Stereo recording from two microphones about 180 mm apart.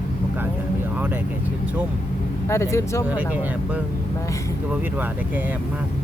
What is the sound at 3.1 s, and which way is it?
Speech, 10° right (ahead or behind).